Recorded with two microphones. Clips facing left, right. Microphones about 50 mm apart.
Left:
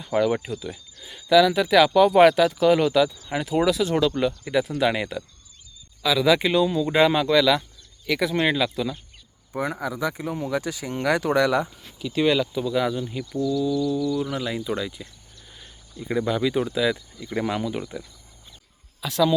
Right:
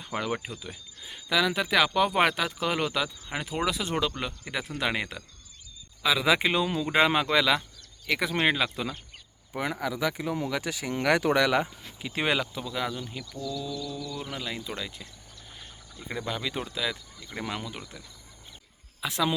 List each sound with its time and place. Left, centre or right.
0.0 s speech: centre
6.0 s speech: centre
9.5 s speech: right
10.1 s speech: right
10.7 s speech: right
11.9 s speech: right
12.5 s speech: centre
19.0 s speech: centre